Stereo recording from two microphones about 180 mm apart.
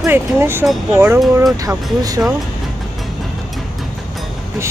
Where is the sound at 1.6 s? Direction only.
20° right (ahead or behind).